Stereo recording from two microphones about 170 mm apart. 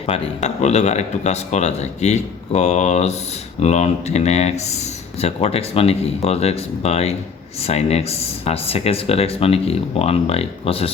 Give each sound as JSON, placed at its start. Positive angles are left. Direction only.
{"t": 0.1, "sound": "speech", "side_deg": 40}